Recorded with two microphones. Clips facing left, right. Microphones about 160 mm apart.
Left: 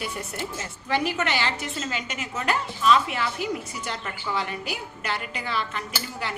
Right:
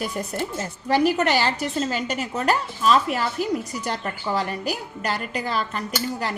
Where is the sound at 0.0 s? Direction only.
40° right (ahead or behind).